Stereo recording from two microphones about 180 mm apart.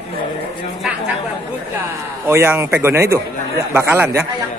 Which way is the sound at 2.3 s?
15° right (ahead or behind).